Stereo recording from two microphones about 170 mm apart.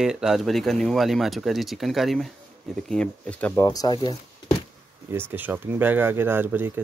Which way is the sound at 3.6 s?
20° left (ahead or behind).